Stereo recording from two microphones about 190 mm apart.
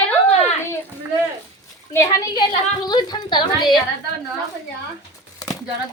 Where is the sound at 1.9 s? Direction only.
20° left (ahead or behind).